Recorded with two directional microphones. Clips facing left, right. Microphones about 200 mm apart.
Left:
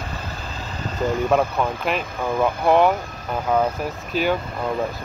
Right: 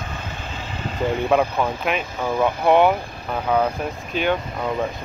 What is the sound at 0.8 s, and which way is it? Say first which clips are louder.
Vehicle: even; 40° left (ahead or behind).